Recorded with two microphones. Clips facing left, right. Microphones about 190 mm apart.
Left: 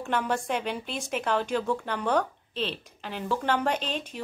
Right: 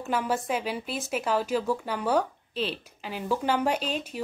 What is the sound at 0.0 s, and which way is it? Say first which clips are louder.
Speech: even; 5° right (ahead or behind).